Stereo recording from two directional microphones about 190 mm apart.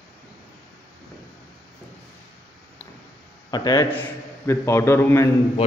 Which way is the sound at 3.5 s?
20° left (ahead or behind).